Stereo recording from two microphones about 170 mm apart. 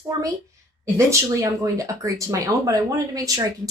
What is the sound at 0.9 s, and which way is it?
A woman's voice, 20° right (ahead or behind).